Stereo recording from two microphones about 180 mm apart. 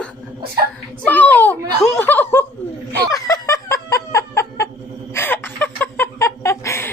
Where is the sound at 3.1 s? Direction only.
20° left (ahead or behind).